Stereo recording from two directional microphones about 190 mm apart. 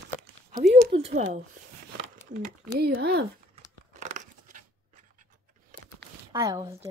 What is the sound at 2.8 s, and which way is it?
Speech, 55° right (ahead or behind).